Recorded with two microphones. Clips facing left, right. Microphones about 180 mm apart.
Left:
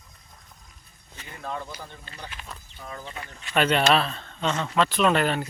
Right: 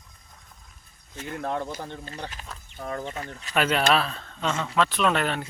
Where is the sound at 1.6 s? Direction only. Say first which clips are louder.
Right 6 dB; 45° right (ahead or behind).